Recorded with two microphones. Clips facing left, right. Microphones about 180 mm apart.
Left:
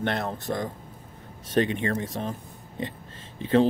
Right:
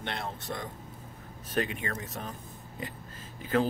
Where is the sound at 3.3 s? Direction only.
25° left (ahead or behind).